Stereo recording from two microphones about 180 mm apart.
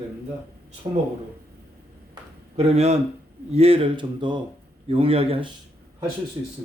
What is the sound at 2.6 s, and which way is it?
A man's voice, 35° right (ahead or behind).